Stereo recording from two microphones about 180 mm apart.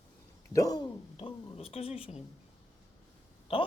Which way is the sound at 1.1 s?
35° left (ahead or behind).